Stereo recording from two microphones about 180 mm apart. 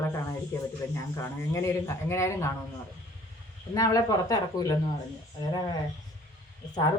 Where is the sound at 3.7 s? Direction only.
20° left (ahead or behind).